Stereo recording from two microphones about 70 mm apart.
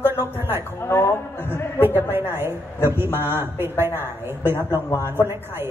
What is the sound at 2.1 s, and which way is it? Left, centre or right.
A woman's voice, right.